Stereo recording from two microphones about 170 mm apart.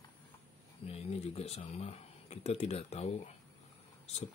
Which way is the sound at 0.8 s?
35° left (ahead or behind).